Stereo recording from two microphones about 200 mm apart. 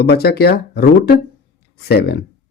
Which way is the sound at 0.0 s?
55° left (ahead or behind).